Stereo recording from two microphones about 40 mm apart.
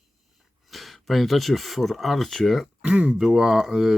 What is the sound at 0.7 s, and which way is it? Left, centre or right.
Speech, centre.